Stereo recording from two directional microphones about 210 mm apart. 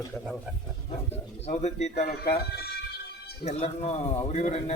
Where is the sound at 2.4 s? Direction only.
50° left (ahead or behind).